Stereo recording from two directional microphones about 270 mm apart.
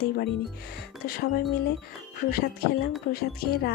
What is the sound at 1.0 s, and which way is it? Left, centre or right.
Speech, left.